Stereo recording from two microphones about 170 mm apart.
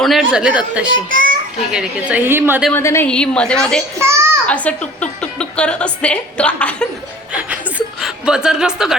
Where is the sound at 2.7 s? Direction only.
15° left (ahead or behind).